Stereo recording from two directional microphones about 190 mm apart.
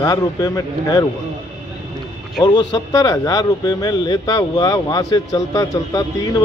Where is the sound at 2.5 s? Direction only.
20° left (ahead or behind).